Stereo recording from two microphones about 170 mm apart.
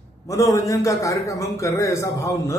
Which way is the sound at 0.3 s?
20° left (ahead or behind).